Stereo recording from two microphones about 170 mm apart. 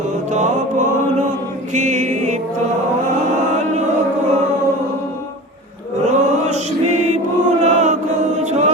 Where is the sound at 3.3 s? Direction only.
45° right (ahead or behind).